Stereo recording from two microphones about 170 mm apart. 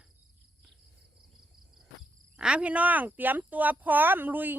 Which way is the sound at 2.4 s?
5° right (ahead or behind).